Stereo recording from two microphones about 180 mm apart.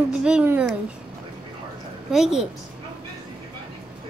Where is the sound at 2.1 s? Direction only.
5° right (ahead or behind).